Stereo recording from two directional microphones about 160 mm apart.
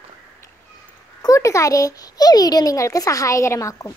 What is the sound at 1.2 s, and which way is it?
A child's voice, 20° left (ahead or behind).